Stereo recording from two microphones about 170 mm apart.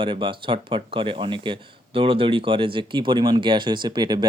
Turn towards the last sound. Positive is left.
turn(degrees=-25)  # may be behind; listen again after turning